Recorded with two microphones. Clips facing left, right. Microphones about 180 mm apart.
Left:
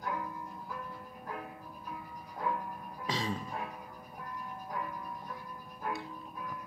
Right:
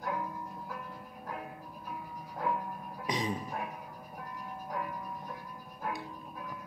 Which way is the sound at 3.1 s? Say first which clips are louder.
Right 2 dB; 20° right (ahead or behind).